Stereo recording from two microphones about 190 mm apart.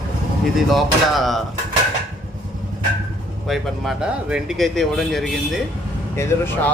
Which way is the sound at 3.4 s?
Centre (ahead or behind).